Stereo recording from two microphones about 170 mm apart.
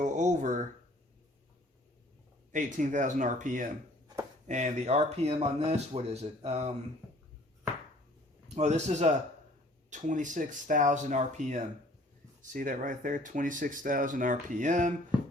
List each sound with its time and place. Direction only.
0.0 s a sound: 45° right (ahead or behind)
2.5 s speech: 50° right (ahead or behind)
8.5 s speech: 40° right (ahead or behind)